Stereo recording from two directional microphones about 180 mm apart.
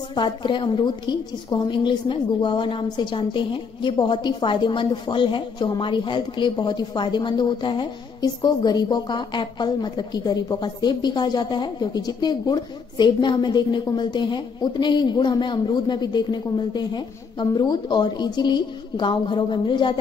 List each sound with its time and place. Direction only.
0.1 s a woman's voice: 25° left (ahead or behind)